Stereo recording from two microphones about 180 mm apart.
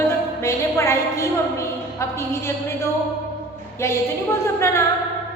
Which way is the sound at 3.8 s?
15° left (ahead or behind).